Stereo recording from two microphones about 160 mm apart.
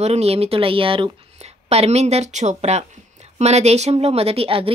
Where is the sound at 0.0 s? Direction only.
40° right (ahead or behind).